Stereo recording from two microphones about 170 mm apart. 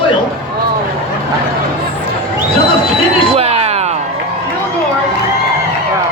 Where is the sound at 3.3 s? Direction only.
35° right (ahead or behind).